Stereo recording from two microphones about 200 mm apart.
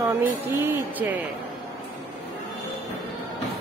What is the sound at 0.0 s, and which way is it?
Speech, 15° right (ahead or behind).